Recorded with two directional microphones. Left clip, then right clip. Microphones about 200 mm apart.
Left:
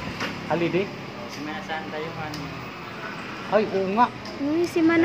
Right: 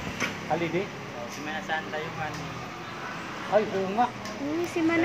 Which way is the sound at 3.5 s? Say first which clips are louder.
Left 2 dB; 45° left (ahead or behind).